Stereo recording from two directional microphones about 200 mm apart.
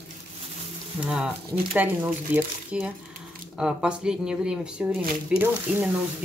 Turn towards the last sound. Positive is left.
turn(degrees=-5)  # may be behind; listen again after turning